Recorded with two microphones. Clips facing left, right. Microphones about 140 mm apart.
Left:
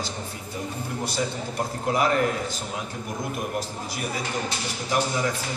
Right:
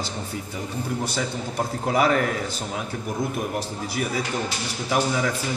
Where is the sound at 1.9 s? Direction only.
70° right (ahead or behind).